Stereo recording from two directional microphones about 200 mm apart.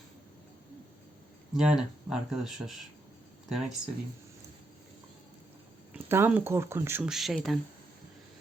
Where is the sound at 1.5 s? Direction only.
5° right (ahead or behind).